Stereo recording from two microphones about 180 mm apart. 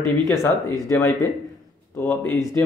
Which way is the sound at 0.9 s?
15° left (ahead or behind).